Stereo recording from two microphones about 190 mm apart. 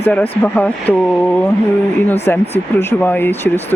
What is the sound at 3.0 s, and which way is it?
Speech, 10° left (ahead or behind).